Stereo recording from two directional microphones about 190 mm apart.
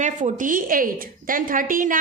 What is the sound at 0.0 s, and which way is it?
A woman's voice, 40° right (ahead or behind).